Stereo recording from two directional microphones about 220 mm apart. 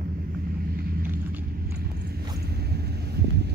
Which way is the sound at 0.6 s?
45° right (ahead or behind).